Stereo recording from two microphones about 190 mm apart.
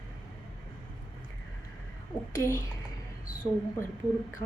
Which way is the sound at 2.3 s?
10° left (ahead or behind).